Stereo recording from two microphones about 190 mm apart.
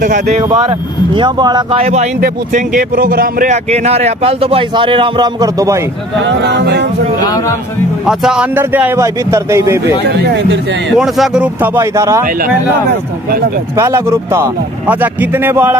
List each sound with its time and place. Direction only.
0.0 s speech: 40° right (ahead or behind)
0.4 s speech: 20° right (ahead or behind)
2.1 s speech: 45° right (ahead or behind)
3.7 s speech: 35° right (ahead or behind); by 5.8 s 20° right (ahead or behind)
6.2 s speech: 65° right (ahead or behind)
7.2 s speech: 15° left (ahead or behind)
8.0 s a man's voice: 5° right (ahead or behind)
10.0 s speech: 70° right (ahead or behind)
11.0 s a man's voice: 5° right (ahead or behind)
13.7 s a man's voice: 15° right (ahead or behind)